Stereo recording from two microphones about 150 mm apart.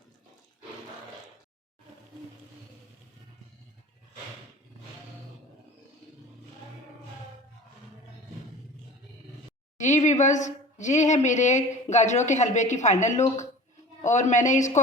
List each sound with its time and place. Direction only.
9.7 s a woman's voice: 55° left (ahead or behind)